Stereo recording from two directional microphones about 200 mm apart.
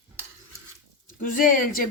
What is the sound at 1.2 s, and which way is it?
Speech, 45° left (ahead or behind).